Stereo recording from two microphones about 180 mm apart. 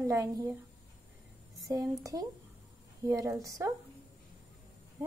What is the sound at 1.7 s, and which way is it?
A woman's voice, 20° right (ahead or behind).